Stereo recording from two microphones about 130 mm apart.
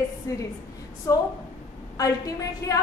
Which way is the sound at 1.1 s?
25° left (ahead or behind).